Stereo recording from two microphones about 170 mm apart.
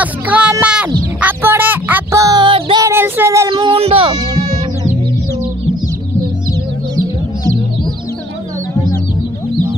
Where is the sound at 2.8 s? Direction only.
15° right (ahead or behind); by 4.4 s 30° right (ahead or behind).